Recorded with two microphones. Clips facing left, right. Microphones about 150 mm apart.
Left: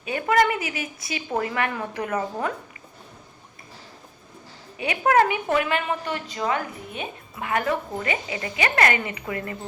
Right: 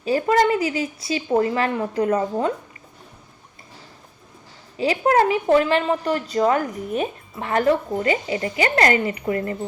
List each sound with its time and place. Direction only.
0.0 s speech: 30° right (ahead or behind)
4.8 s a woman's voice: 30° right (ahead or behind)